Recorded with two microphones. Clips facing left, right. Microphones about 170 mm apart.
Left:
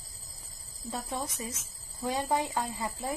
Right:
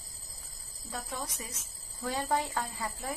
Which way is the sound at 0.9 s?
25° left (ahead or behind).